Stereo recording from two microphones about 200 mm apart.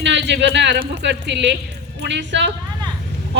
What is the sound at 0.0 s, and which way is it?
Speech, 60° right (ahead or behind).